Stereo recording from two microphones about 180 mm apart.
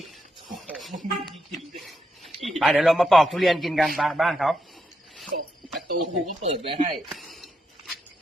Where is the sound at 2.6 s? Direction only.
5° right (ahead or behind).